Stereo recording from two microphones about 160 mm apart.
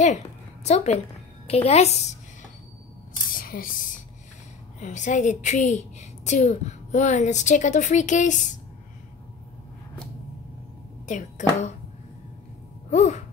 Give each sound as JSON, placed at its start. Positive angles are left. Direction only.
{"t": 0.7, "sound": "a woman's voice", "side_deg": 40}
{"t": 3.3, "sound": "a sound", "side_deg": 60}
{"t": 4.7, "sound": "a woman's voice", "side_deg": 50}
{"t": 11.1, "sound": "a woman's voice", "side_deg": 50}
{"t": 12.9, "sound": "music", "side_deg": 50}